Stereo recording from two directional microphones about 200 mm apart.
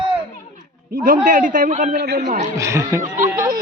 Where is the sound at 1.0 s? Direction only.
40° right (ahead or behind).